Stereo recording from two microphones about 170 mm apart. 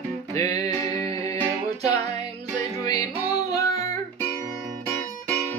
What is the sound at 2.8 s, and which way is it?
Music, 20° left (ahead or behind).